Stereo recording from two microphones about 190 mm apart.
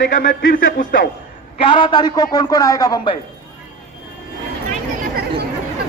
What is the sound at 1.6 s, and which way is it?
A man's voice, 25° left (ahead or behind).